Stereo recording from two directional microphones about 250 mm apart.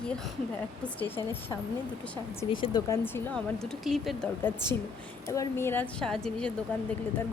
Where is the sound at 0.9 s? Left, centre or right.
Centre.